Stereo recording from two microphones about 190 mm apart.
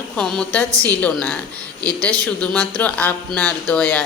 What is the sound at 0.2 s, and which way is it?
Speech, 5° left (ahead or behind).